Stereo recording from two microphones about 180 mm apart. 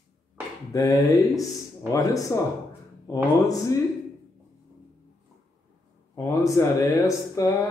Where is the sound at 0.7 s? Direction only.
20° left (ahead or behind).